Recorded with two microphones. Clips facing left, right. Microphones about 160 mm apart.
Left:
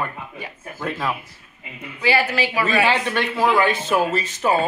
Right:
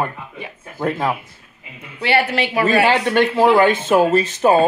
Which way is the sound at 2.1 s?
65° right (ahead or behind).